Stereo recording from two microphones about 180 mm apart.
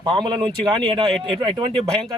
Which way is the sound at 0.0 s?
25° right (ahead or behind).